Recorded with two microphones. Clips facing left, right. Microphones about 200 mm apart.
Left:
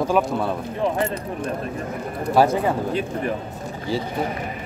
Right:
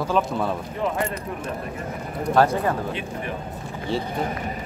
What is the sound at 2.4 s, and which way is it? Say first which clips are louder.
Speech: left 2 dB; 10° left (ahead or behind).